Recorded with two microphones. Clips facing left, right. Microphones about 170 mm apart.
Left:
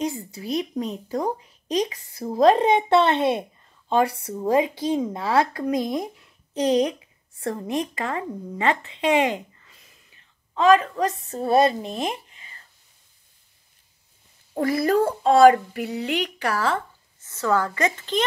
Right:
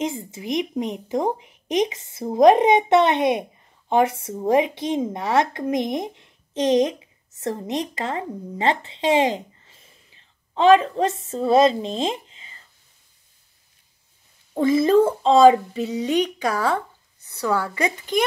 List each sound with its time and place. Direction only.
0.0 s a woman's voice: 20° right (ahead or behind)
14.7 s a woman's voice: 20° right (ahead or behind)